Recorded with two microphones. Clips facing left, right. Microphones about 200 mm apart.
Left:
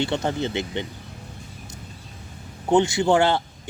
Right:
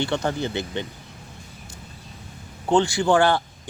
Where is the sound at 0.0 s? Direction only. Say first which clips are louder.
Even; 20° left (ahead or behind).